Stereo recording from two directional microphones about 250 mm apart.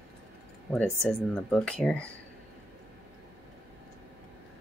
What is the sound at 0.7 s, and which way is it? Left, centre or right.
Speech, centre.